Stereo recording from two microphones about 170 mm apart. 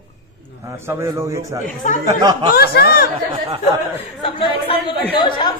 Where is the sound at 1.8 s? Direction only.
45° left (ahead or behind).